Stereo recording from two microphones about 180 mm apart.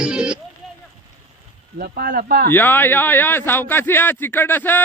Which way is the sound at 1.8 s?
55° right (ahead or behind).